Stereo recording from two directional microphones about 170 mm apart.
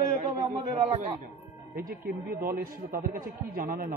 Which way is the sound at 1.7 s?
60° right (ahead or behind).